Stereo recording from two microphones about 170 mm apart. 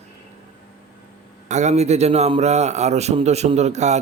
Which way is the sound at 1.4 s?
40° right (ahead or behind).